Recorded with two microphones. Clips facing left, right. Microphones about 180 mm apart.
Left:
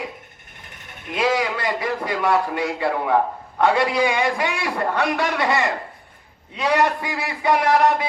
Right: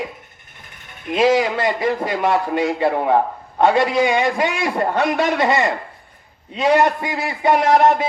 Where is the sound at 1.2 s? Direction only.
25° right (ahead or behind).